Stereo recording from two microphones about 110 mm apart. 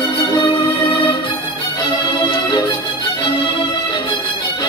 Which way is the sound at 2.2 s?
45° left (ahead or behind).